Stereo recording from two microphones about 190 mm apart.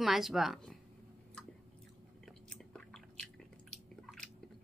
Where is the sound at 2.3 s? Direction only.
5° left (ahead or behind).